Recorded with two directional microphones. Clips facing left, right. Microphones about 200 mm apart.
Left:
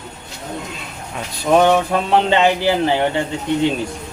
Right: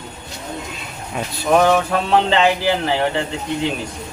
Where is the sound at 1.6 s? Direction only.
20° left (ahead or behind).